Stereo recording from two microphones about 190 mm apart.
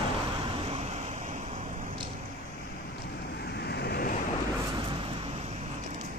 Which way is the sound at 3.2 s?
60° left (ahead or behind).